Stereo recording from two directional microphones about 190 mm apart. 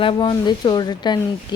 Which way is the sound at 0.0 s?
25° left (ahead or behind).